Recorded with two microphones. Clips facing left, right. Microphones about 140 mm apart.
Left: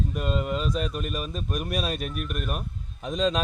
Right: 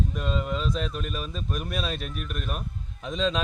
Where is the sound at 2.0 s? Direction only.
50° left (ahead or behind).